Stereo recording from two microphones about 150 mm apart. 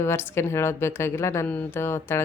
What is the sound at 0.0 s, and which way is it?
Speech, 15° left (ahead or behind).